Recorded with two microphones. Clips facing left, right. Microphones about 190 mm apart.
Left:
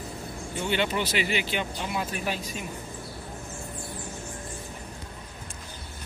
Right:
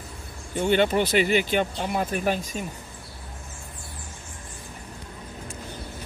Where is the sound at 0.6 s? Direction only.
50° right (ahead or behind).